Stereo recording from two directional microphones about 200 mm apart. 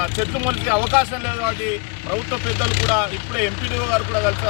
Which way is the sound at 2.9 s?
5° right (ahead or behind).